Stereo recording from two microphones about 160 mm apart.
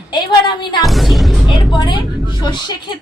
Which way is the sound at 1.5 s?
30° left (ahead or behind).